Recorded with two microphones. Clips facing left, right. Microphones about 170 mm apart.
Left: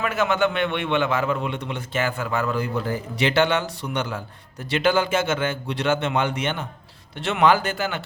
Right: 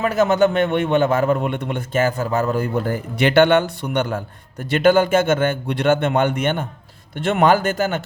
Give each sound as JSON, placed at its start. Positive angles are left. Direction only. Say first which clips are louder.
{"t": 0.0, "sound": "a man's voice", "louder": "right 6 dB", "side_deg": -40}